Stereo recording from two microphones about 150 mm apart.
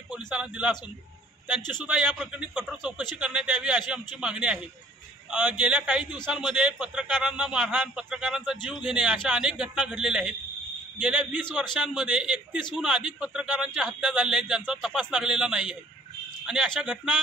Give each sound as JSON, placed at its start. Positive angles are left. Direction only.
{"t": 0.3, "sound": "a man's voice", "side_deg": -5}
{"t": 1.6, "sound": "a man's voice", "side_deg": 30}
{"t": 1.9, "sound": "a man's voice", "side_deg": -5}
{"t": 2.8, "sound": "a man's voice", "side_deg": 30}
{"t": 3.2, "sound": "a man's voice", "side_deg": -5}